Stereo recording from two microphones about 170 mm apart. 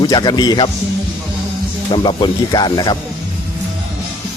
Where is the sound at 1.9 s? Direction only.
30° left (ahead or behind).